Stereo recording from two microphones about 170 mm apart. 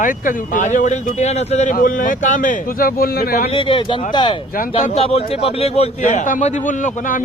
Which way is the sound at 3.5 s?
30° left (ahead or behind).